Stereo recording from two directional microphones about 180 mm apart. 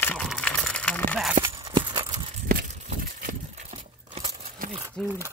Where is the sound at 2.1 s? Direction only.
55° right (ahead or behind).